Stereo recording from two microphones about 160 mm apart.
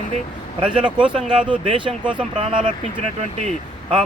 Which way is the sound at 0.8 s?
5° right (ahead or behind).